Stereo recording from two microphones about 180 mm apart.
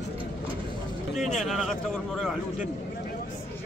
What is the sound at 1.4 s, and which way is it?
Speech, centre (ahead or behind).